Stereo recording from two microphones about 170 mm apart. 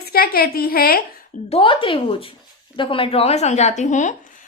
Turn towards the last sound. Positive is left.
turn(degrees=45)  # may be behind; listen again after turning